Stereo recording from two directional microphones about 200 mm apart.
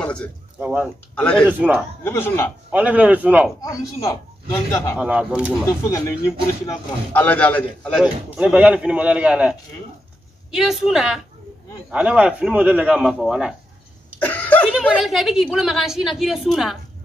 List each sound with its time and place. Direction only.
0.0 s a sound: 5° left (ahead or behind)
0.6 s a man's voice: 5° right (ahead or behind)
1.1 s a man's voice: 5° left (ahead or behind)
1.5 s a man's voice: 10° right (ahead or behind)
2.0 s speech: 10° left (ahead or behind)
2.7 s a man's voice: 5° right (ahead or behind)
3.6 s speech: 15° left (ahead or behind)
4.9 s a man's voice: 5° right (ahead or behind)
5.7 s a man's voice: 15° left (ahead or behind); by 13.6 s centre (ahead or behind)
14.2 s a man's voice: 10° left (ahead or behind)